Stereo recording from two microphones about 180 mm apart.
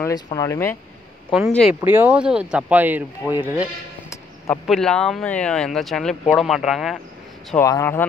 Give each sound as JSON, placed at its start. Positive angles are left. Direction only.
{"t": 0.0, "sound": "speech", "side_deg": 20}
{"t": 1.5, "sound": "speech", "side_deg": 0}
{"t": 4.5, "sound": "speech", "side_deg": 0}
{"t": 7.5, "sound": "speech", "side_deg": 15}